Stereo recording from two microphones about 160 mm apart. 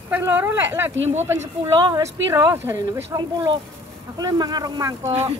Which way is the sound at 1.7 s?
25° right (ahead or behind).